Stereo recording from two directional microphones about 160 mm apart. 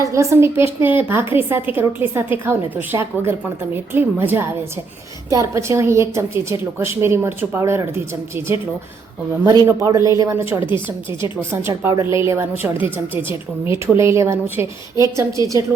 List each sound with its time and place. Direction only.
0.0 s a woman's voice: 20° right (ahead or behind)
9.4 s a woman's voice: 25° right (ahead or behind)
13.8 s a woman's voice: 20° right (ahead or behind)